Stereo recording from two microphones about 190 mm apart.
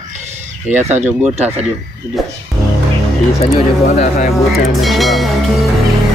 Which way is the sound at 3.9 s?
40° left (ahead or behind).